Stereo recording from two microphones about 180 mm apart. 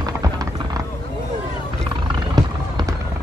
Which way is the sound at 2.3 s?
20° right (ahead or behind).